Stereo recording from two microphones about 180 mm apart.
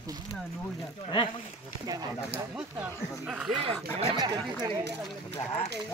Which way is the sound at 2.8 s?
5° right (ahead or behind).